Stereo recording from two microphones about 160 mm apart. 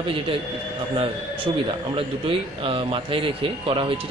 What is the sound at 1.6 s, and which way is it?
Speech, 35° right (ahead or behind).